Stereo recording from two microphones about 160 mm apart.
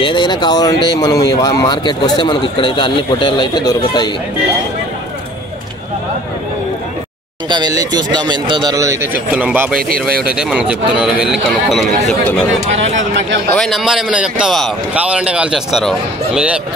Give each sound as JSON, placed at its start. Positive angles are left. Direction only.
{"t": 0.0, "sound": "speech", "side_deg": 30}
{"t": 7.4, "sound": "speech", "side_deg": -25}
{"t": 13.6, "sound": "speech", "side_deg": 0}